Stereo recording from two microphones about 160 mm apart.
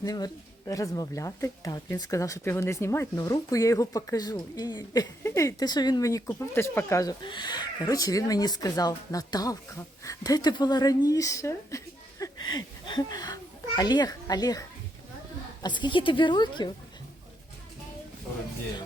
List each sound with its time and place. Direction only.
0.0 s a child's voice: 25° left (ahead or behind)
15.6 s speech: 30° left (ahead or behind)